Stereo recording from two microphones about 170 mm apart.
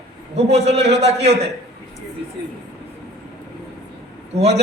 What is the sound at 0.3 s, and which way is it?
A man's voice, 40° right (ahead or behind).